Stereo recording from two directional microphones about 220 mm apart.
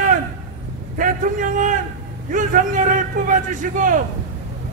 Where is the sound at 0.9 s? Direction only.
35° right (ahead or behind).